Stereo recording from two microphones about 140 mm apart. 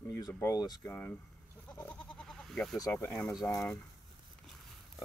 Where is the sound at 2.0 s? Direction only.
5° left (ahead or behind).